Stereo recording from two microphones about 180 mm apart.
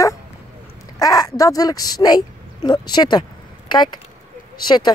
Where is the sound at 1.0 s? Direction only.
20° left (ahead or behind).